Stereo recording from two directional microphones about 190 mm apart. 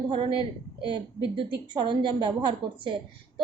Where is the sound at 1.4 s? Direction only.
25° right (ahead or behind).